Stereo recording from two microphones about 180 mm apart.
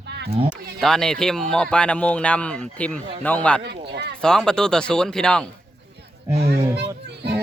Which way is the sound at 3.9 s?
70° right (ahead or behind).